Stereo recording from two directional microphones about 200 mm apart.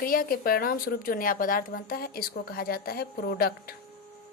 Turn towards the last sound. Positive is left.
turn(degrees=50)  # may be behind; listen again after turning